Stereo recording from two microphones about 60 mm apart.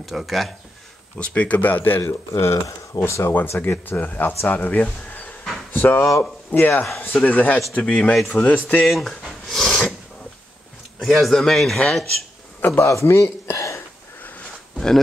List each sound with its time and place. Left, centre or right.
0.0 s speech: centre
1.1 s speech: left
2.3 s speech: left
3.3 s speech: left; by 8.2 s centre
8.2 s speech: centre
8.5 s speech: left
8.8 s a sound: centre
11.0 s speech: centre
12.5 s a sound: left
12.8 s speech: left
13.2 s a sound: left